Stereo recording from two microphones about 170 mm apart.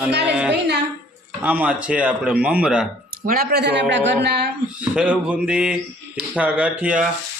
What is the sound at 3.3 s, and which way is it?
Speech, 65° right (ahead or behind).